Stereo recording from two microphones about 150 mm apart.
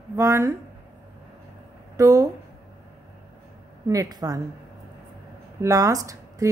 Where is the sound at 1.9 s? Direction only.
20° right (ahead or behind).